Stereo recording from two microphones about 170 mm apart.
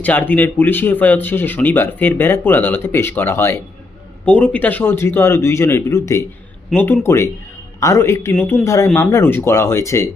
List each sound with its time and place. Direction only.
0.0 s speech: 10° left (ahead or behind)